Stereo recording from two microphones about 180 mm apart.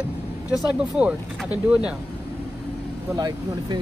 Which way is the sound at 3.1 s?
25° right (ahead or behind).